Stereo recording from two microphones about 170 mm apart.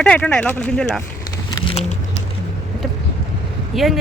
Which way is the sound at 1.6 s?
40° left (ahead or behind).